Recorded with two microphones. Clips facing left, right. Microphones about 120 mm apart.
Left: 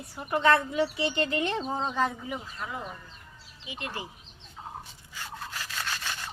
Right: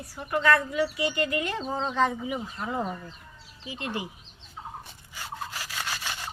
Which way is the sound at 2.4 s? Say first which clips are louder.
Right 5 dB; 30° right (ahead or behind).